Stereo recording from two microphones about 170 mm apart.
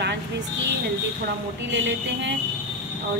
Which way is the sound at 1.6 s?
90° right.